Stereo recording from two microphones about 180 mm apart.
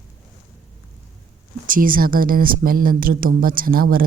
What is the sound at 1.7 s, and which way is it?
Speech, 50° right (ahead or behind).